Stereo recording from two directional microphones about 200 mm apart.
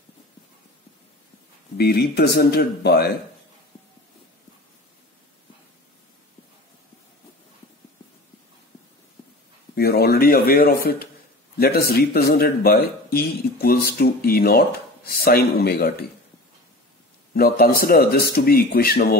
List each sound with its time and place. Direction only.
1.8 s speech: 50° left (ahead or behind)
9.8 s a man's voice: 50° left (ahead or behind)
17.3 s speech: 50° left (ahead or behind)